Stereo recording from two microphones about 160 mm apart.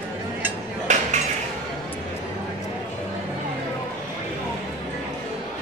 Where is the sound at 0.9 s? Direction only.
50° right (ahead or behind).